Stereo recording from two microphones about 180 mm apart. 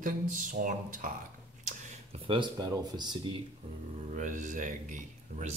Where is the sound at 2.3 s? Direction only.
25° right (ahead or behind).